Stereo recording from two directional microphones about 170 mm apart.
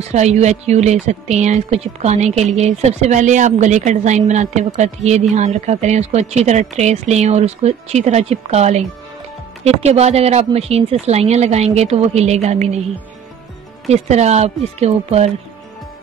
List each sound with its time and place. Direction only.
0.1 s speech: 40° right (ahead or behind)
13.8 s speech: 40° right (ahead or behind)